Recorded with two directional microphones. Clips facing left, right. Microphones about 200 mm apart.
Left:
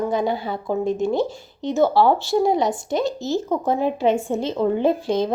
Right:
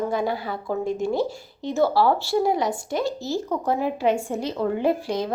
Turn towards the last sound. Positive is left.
turn(degrees=25)  # may be behind; listen again after turning